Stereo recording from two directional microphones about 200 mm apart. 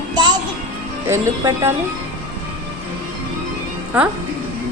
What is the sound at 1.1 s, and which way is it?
Speech, 15° right (ahead or behind).